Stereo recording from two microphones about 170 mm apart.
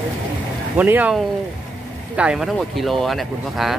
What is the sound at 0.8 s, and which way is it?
Speech, 10° right (ahead or behind).